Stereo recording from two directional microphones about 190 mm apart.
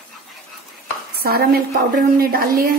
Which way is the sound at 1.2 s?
55° right (ahead or behind).